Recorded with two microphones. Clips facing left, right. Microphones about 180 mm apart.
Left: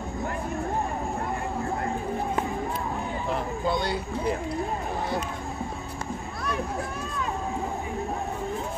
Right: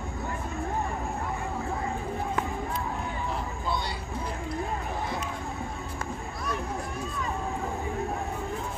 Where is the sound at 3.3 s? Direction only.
60° left (ahead or behind).